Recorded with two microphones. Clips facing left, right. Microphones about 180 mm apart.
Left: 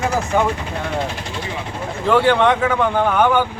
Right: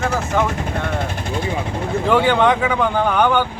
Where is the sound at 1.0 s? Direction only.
50° right (ahead or behind).